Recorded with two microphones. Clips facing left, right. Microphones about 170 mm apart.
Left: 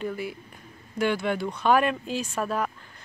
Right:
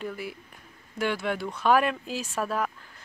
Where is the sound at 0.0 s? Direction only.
Centre (ahead or behind).